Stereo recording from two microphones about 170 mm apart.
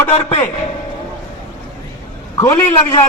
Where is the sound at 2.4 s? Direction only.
15° left (ahead or behind).